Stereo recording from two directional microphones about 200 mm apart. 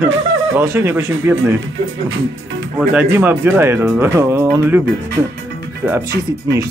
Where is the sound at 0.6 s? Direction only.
10° right (ahead or behind).